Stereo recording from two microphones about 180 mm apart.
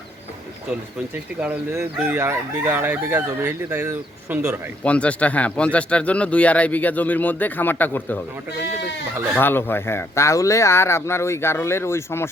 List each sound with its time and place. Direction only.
1.4 s speech: 10° right (ahead or behind)
4.8 s speech: 5° left (ahead or behind)
9.3 s speech: 10° left (ahead or behind)